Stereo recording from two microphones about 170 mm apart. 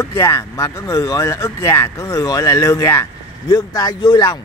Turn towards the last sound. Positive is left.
turn(degrees=25)  # may be behind; listen again after turning